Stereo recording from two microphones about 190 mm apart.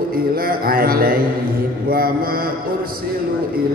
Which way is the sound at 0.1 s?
50° right (ahead or behind).